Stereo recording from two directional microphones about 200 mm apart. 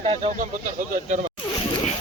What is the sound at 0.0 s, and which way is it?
Speech, 30° right (ahead or behind).